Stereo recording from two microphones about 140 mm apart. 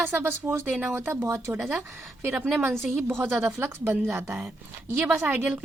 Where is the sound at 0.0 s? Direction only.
15° right (ahead or behind).